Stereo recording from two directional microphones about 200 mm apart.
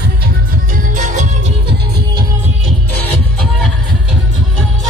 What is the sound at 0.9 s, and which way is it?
Music, 40° right (ahead or behind).